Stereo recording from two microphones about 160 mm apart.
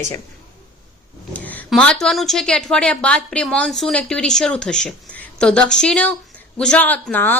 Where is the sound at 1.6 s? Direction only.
5° left (ahead or behind).